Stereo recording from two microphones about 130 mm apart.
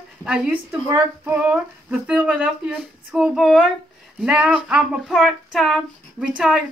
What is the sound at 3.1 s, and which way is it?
Speech, 5° right (ahead or behind).